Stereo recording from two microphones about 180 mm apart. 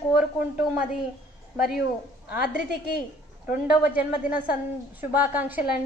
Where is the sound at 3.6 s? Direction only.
10° right (ahead or behind).